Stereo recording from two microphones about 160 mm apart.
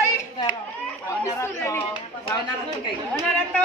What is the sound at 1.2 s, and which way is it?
Chatter, 15° left (ahead or behind).